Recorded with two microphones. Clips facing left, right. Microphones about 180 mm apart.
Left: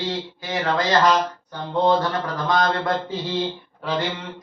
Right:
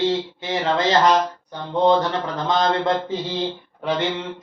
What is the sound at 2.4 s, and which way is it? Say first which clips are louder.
Mantra: right 2 dB; 25° right (ahead or behind).